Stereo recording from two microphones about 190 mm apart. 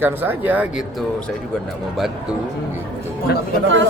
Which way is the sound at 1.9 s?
Centre (ahead or behind).